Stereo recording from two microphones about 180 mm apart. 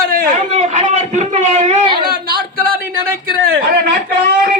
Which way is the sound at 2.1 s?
55° right (ahead or behind).